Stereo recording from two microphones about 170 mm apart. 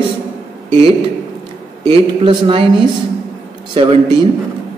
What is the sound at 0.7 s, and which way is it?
A man's voice, 35° right (ahead or behind).